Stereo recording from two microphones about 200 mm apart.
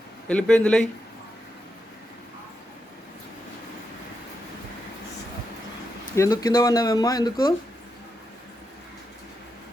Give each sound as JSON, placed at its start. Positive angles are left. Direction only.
{"t": 0.3, "sound": "speech", "side_deg": 5}
{"t": 6.1, "sound": "speech", "side_deg": 15}